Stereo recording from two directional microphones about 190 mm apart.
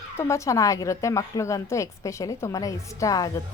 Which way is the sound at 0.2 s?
15° left (ahead or behind).